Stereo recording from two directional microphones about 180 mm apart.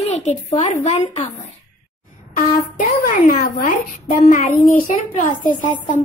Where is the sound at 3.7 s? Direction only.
45° left (ahead or behind).